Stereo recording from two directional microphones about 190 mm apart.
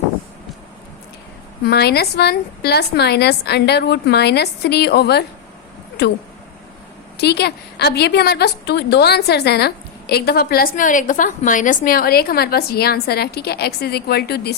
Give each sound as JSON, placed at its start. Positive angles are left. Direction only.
{"t": 1.6, "sound": "a woman's voice", "side_deg": 55}
{"t": 7.2, "sound": "a woman's voice", "side_deg": 60}